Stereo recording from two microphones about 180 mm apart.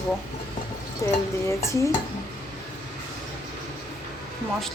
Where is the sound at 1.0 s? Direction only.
15° left (ahead or behind).